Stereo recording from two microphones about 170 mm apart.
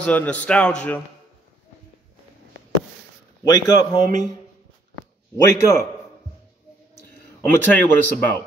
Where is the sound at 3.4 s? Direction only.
25° left (ahead or behind).